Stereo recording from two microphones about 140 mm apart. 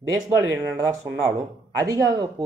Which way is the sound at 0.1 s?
25° right (ahead or behind).